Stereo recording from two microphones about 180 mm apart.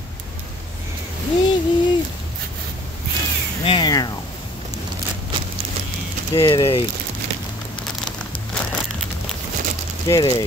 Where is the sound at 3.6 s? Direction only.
25° left (ahead or behind).